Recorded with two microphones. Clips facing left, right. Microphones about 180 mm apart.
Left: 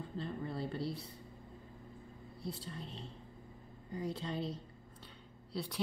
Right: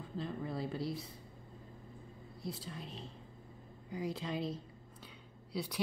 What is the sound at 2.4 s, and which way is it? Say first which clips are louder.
Speech: even; 90° right.